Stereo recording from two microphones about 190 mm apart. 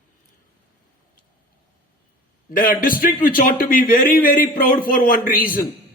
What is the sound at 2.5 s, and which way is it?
A man's voice, 50° left (ahead or behind).